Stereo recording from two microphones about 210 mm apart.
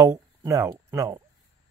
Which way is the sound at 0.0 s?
15° right (ahead or behind).